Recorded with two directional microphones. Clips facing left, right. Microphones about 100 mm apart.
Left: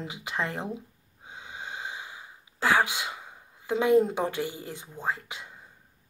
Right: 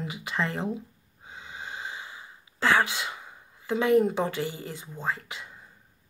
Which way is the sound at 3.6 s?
20° left (ahead or behind).